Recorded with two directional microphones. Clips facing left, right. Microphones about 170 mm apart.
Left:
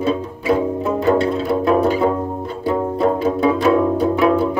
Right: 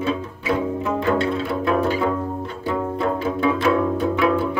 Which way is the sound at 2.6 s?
40° left (ahead or behind).